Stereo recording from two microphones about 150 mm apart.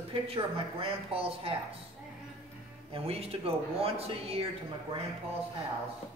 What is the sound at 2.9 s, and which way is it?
A woman's voice, 40° right (ahead or behind).